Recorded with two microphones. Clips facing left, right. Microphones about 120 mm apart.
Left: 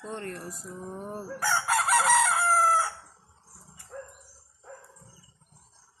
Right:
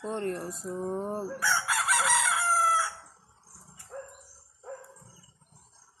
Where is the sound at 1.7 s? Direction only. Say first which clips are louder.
Left 7 dB; 45° left (ahead or behind).